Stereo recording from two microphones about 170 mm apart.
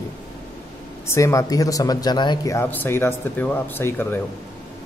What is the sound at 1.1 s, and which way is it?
Speech, 15° left (ahead or behind).